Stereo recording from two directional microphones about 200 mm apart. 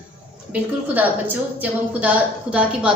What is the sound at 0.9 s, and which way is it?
A woman's voice, 10° right (ahead or behind).